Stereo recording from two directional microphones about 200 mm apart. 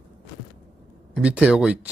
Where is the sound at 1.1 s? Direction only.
5° right (ahead or behind).